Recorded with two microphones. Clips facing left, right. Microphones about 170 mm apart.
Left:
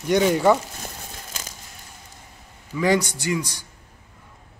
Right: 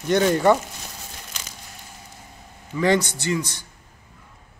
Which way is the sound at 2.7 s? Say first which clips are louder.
Right 1 dB; 10° left (ahead or behind).